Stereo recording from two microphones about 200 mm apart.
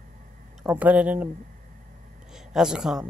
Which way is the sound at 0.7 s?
5° right (ahead or behind).